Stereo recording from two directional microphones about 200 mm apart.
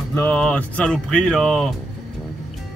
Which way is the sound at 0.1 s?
10° left (ahead or behind).